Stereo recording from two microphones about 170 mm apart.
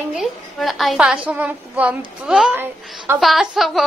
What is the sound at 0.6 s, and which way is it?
A woman's voice, centre (ahead or behind).